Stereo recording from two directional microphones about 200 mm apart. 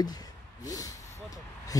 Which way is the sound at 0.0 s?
20° left (ahead or behind).